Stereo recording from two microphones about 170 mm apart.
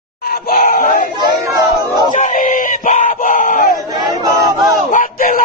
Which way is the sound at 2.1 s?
50° left (ahead or behind).